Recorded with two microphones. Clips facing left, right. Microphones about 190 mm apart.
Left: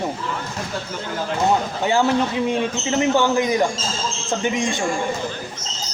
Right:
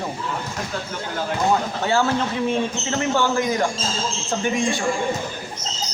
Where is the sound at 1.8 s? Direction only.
15° left (ahead or behind).